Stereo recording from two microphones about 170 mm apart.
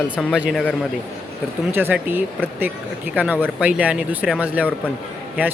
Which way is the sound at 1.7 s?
10° right (ahead or behind).